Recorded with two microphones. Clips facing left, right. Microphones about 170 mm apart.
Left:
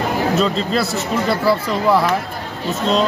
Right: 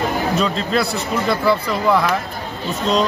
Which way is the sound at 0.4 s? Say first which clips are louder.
Left 1 dB; centre (ahead or behind).